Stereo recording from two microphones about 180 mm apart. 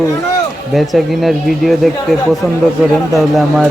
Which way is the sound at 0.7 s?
Centre (ahead or behind).